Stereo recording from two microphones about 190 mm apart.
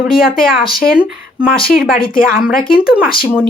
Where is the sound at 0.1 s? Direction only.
50° left (ahead or behind).